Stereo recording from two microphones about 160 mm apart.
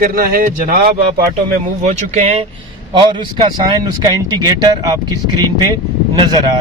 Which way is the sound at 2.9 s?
30° right (ahead or behind).